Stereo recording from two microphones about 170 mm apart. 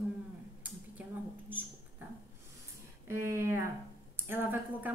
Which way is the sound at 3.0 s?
15° right (ahead or behind).